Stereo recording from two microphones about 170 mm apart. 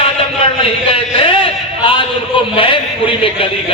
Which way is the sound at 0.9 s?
30° left (ahead or behind).